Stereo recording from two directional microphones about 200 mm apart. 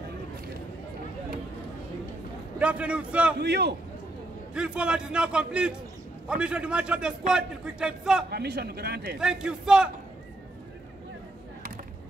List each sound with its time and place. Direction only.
2.6 s a man's voice: 5° right (ahead or behind)
3.3 s speech: 55° right (ahead or behind)
4.6 s a man's voice: 5° right (ahead or behind)
8.3 s speech: 55° right (ahead or behind)
9.2 s a man's voice: 5° right (ahead or behind)